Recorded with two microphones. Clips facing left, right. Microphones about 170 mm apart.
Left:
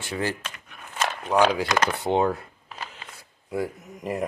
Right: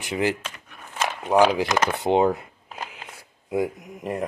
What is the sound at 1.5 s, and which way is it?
Speech, 20° right (ahead or behind).